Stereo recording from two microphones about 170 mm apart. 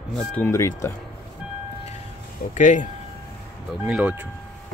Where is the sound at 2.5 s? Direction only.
45° left (ahead or behind).